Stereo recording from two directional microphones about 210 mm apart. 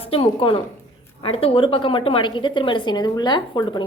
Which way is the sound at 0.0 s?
25° left (ahead or behind).